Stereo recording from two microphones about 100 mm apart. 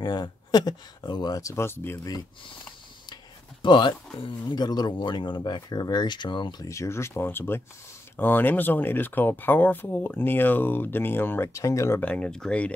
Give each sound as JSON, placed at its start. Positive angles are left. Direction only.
{"t": 0.0, "sound": "speech", "side_deg": 45}
{"t": 3.6, "sound": "speech", "side_deg": 50}
{"t": 6.6, "sound": "speech", "side_deg": 30}
{"t": 12.0, "sound": "speech", "side_deg": 10}